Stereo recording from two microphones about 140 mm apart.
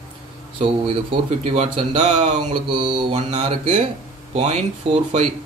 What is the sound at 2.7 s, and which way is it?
Speech, 35° right (ahead or behind).